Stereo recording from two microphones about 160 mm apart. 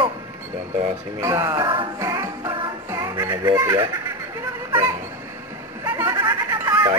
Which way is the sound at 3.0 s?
15° right (ahead or behind).